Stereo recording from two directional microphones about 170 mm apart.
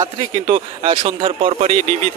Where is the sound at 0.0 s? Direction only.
30° right (ahead or behind).